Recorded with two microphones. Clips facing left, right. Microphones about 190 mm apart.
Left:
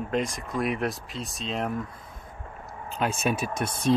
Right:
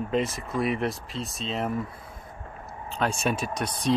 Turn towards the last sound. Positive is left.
turn(degrees=5)  # may be behind; listen again after turning